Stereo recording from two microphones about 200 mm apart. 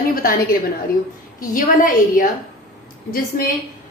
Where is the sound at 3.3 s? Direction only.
45° left (ahead or behind).